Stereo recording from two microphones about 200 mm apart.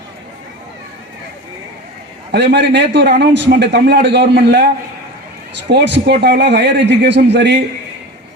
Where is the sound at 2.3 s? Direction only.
55° right (ahead or behind).